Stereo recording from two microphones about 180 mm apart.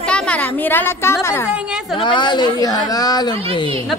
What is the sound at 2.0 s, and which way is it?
Speech, 25° left (ahead or behind).